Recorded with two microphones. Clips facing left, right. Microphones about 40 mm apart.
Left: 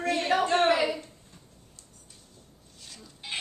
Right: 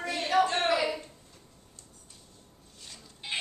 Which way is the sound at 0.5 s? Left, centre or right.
Left.